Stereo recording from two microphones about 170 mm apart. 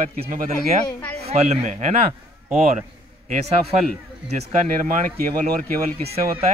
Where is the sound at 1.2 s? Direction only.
40° right (ahead or behind).